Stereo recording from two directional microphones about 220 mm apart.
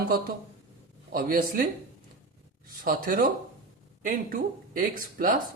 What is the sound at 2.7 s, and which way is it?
Speech, 40° right (ahead or behind).